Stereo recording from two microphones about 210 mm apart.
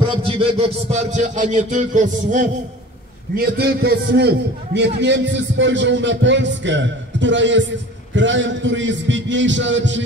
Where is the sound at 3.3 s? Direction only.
45° right (ahead or behind).